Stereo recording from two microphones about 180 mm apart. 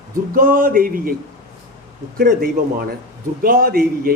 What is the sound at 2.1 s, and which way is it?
Speech, 55° right (ahead or behind).